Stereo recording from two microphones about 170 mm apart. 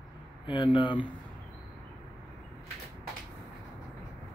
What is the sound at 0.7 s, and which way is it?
Speech, 30° left (ahead or behind).